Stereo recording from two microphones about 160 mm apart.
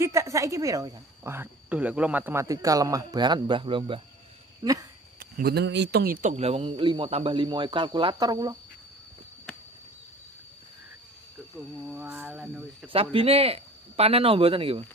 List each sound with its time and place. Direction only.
0.0 s a woman's voice: 20° right (ahead or behind)
5.2 s speech: 80° right
6.2 s speech: 40° right (ahead or behind); by 8.5 s 25° right (ahead or behind)
11.8 s speech: 10° right (ahead or behind)
12.9 s speech: 35° right (ahead or behind)